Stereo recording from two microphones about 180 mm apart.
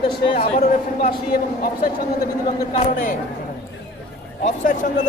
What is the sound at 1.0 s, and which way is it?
Speech, 55° left (ahead or behind).